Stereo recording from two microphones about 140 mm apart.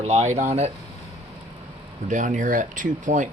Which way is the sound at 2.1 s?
65° right (ahead or behind).